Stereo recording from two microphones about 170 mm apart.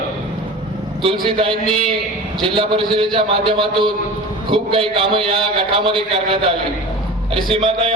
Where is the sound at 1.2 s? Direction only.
30° right (ahead or behind).